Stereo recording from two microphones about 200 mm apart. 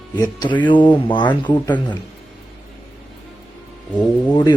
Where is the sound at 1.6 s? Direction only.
10° left (ahead or behind).